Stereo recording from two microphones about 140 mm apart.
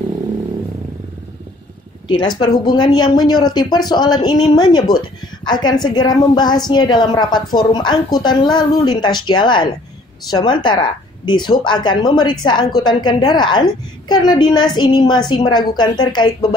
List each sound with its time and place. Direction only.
2.0 s a woman's voice: 30° left (ahead or behind)